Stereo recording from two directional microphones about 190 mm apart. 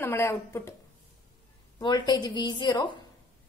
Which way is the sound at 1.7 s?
25° left (ahead or behind).